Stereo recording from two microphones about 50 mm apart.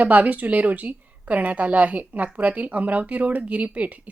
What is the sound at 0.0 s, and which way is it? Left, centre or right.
A woman's voice, right.